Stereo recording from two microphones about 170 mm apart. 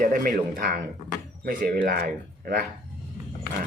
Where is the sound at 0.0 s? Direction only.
50° right (ahead or behind).